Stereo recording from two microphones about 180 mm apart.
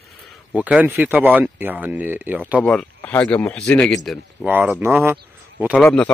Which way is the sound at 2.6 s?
5° left (ahead or behind).